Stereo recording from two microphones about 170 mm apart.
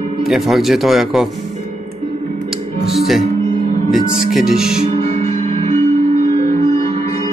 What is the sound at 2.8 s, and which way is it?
Music, centre (ahead or behind).